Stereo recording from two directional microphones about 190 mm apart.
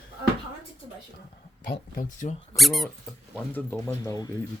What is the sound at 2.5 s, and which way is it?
Speech, centre (ahead or behind).